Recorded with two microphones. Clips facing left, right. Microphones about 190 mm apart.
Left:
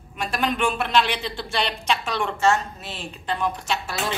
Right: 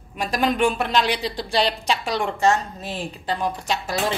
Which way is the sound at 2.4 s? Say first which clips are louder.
Even; 15° right (ahead or behind).